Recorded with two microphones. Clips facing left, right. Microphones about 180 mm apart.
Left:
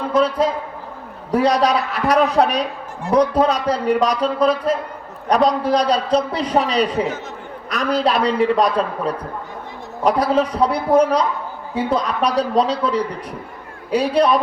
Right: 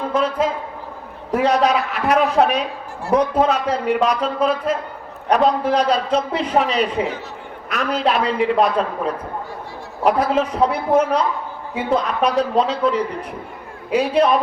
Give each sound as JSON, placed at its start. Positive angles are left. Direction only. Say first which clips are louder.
{"t": 0.1, "sound": "a man's voice", "louder": "left 4 dB", "side_deg": 35}